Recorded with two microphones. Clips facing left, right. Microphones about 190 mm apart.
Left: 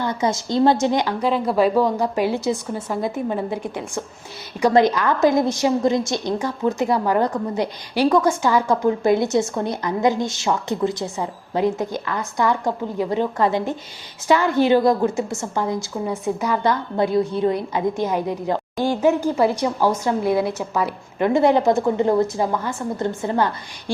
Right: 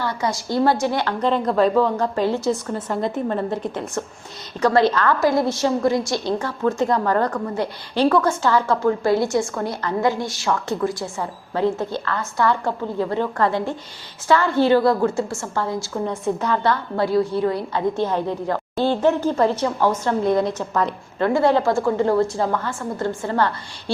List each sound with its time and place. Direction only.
0.0 s a woman's voice: 20° left (ahead or behind)